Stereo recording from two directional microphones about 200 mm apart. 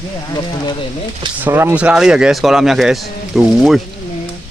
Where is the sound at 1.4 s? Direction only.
10° right (ahead or behind).